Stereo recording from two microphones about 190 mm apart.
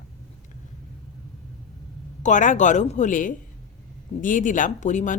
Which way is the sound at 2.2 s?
40° left (ahead or behind).